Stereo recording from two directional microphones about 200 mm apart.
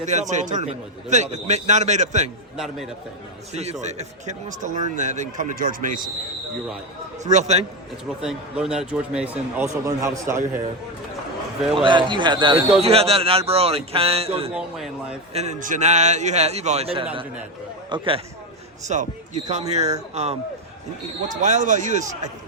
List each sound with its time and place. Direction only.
0.0 s speech: 35° right (ahead or behind)
2.6 s speech: centre (ahead or behind)
3.5 s speech: 35° right (ahead or behind)
7.3 s speech: 35° right (ahead or behind)
8.2 s speech: 5° right (ahead or behind)
11.7 s speech: 25° right (ahead or behind)
14.5 s speech: 5° right (ahead or behind)
15.3 s speech: 35° right (ahead or behind)
18.9 s speech: 35° right (ahead or behind)
21.4 s speech: 40° right (ahead or behind)